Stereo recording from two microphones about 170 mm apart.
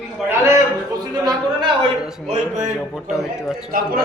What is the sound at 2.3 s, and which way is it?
Speech, 40° right (ahead or behind).